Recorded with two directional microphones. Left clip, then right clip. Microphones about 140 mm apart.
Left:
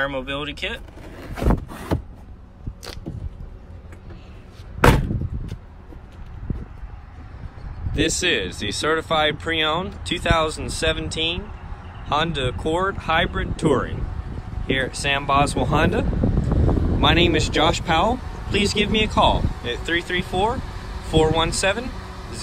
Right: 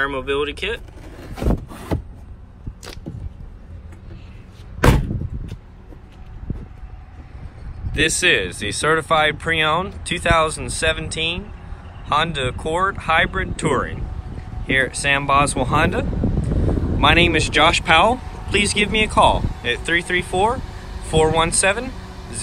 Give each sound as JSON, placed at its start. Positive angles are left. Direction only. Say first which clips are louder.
{"t": 0.1, "sound": "speech", "louder": "right 5 dB", "side_deg": 15}
{"t": 1.5, "sound": "rub", "louder": "left 1 dB", "side_deg": 0}
{"t": 7.9, "sound": "speech", "louder": "right 4 dB", "side_deg": 10}
{"t": 16.1, "sound": "a sound", "louder": "even", "side_deg": -25}
{"t": 16.6, "sound": "speech", "louder": "right 3 dB", "side_deg": 5}